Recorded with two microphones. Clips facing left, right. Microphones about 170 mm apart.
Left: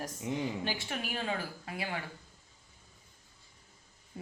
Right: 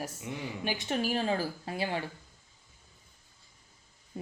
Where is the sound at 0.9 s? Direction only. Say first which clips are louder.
Right 9 dB; 35° right (ahead or behind).